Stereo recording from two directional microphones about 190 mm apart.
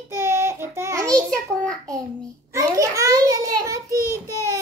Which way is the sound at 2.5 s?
15° right (ahead or behind).